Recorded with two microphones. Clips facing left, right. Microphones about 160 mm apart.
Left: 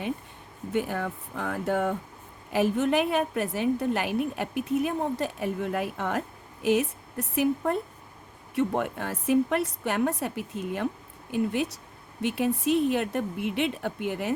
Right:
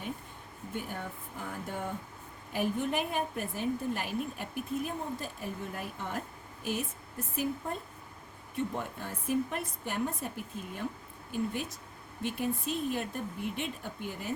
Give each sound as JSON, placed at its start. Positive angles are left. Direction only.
{"t": 0.7, "sound": "a woman's voice", "side_deg": 85}
{"t": 2.5, "sound": "a woman's voice", "side_deg": 90}